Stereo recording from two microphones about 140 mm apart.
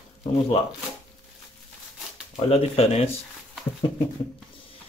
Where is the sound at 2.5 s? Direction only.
50° left (ahead or behind).